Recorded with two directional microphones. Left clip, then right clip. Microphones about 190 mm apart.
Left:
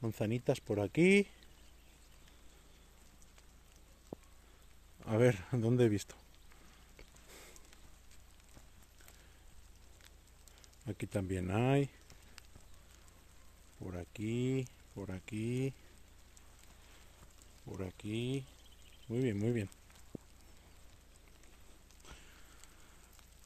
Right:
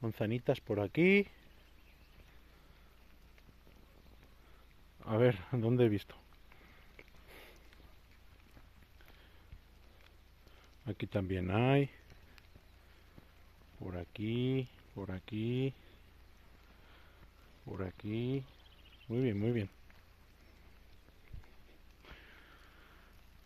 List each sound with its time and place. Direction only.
0.0 s speech: 10° left (ahead or behind)
5.0 s speech: 20° left (ahead or behind)
7.0 s a sound: 15° left (ahead or behind)
10.9 s speech: centre (ahead or behind)
13.7 s speech: 5° right (ahead or behind)
17.6 s speech: 10° right (ahead or behind)
22.0 s a sound: centre (ahead or behind)